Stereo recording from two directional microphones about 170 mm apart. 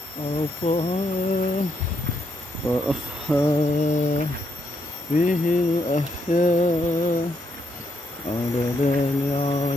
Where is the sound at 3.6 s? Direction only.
45° left (ahead or behind).